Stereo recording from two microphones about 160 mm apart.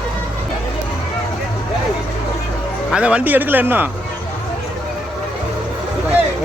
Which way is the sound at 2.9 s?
5° right (ahead or behind).